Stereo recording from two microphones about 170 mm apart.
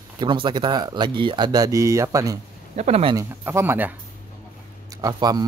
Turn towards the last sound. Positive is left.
turn(degrees=-25)  # may be behind; listen again after turning